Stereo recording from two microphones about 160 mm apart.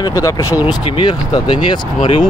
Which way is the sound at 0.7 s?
30° left (ahead or behind).